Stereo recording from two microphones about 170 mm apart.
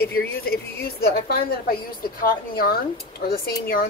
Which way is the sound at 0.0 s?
65° left (ahead or behind).